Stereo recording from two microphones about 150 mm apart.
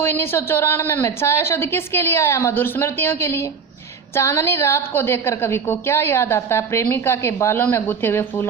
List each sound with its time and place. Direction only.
0.0 s a woman's voice: 15° left (ahead or behind)